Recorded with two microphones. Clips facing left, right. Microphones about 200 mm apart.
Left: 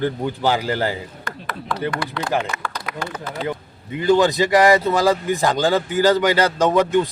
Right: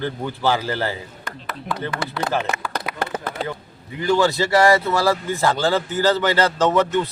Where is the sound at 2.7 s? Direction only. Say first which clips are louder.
Right 3 dB; 60° right (ahead or behind).